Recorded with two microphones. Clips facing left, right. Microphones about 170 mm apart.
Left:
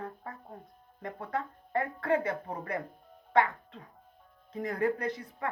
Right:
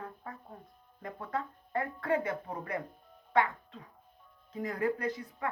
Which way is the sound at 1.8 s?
55° left (ahead or behind).